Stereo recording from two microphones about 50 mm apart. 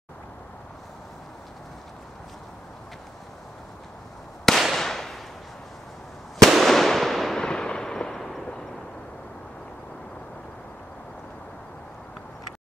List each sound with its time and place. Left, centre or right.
4.5 s fireworks: centre
4.7 s firecracker: centre
6.6 s fireworks: centre
7.4 s fireworks: centre